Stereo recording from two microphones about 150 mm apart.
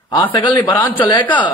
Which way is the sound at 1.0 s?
35° left (ahead or behind).